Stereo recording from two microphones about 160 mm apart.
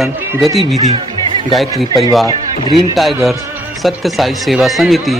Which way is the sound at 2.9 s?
Centre (ahead or behind).